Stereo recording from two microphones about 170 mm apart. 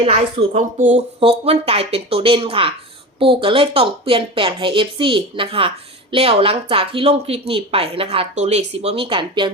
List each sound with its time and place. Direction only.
0.0 s speech: 35° right (ahead or behind)